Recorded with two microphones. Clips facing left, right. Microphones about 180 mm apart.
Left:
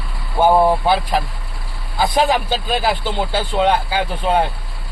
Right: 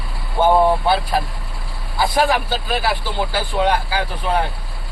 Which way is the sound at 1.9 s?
20° left (ahead or behind).